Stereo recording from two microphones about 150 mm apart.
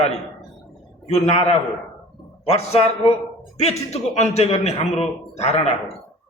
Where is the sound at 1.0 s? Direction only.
40° left (ahead or behind).